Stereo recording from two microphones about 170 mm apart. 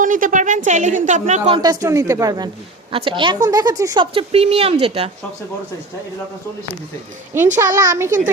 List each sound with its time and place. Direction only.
0.0 s a woman's voice: 50° right (ahead or behind)
1.5 s speech: 20° right (ahead or behind)
4.0 s speech: 35° right (ahead or behind)
7.3 s a woman's voice: 15° right (ahead or behind)